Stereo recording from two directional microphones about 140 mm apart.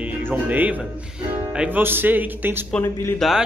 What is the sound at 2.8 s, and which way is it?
Speech, 20° left (ahead or behind).